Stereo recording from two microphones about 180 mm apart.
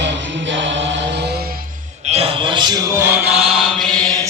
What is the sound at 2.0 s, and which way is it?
Chant, 35° right (ahead or behind).